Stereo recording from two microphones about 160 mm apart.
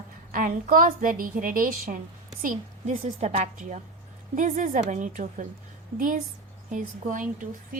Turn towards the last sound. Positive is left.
turn(degrees=-55)  # may be behind; listen again after turning